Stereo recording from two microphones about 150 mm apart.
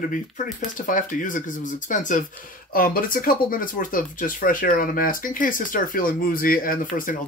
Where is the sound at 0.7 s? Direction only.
65° left (ahead or behind).